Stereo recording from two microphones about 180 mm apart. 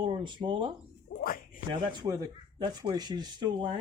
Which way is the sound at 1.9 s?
20° right (ahead or behind).